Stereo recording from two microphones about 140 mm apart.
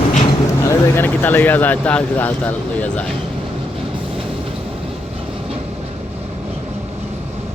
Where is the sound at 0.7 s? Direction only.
15° left (ahead or behind).